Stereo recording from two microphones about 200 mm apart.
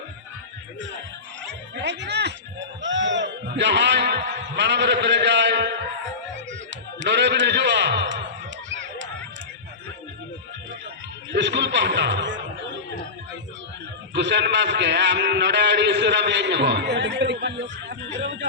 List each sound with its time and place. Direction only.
1.7 s a man's voice: 60° right (ahead or behind)
8.7 s a sound: 65° right (ahead or behind)
11.3 s a man's voice: 60° right (ahead or behind)
14.1 s a man's voice: 60° right (ahead or behind)